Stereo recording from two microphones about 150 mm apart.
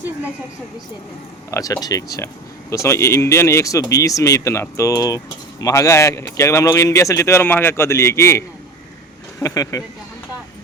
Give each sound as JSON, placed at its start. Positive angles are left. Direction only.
{"t": 1.5, "sound": "speech", "side_deg": 20}